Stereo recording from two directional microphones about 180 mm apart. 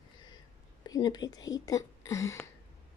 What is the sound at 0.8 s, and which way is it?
Speech, 20° left (ahead or behind).